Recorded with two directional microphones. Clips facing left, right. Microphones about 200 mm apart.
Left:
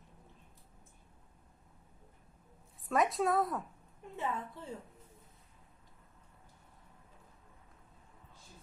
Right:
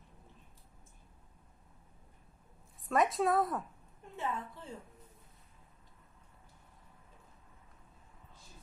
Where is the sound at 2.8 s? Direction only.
Centre (ahead or behind).